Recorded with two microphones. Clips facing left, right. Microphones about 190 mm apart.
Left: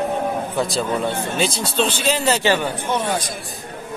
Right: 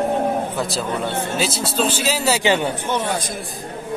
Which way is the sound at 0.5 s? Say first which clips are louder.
Left 2 dB; centre (ahead or behind).